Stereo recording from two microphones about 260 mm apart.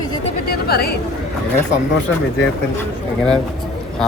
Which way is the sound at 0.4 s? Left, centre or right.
Left.